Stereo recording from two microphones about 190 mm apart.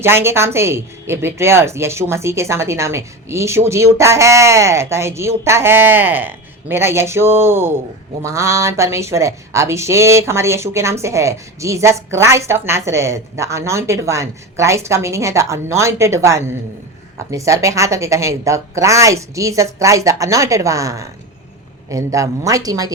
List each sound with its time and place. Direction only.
0.0 s a woman's voice: 10° right (ahead or behind)